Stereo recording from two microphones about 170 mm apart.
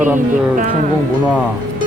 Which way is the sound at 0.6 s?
50° right (ahead or behind).